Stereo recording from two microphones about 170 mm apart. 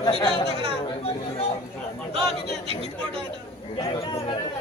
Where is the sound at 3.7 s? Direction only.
20° left (ahead or behind).